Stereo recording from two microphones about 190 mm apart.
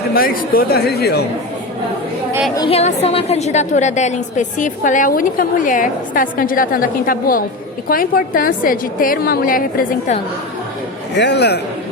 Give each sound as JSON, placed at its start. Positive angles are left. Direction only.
{"t": 0.1, "sound": "speech", "side_deg": 50}
{"t": 2.6, "sound": "a woman's voice", "side_deg": 30}
{"t": 11.2, "sound": "speech", "side_deg": 65}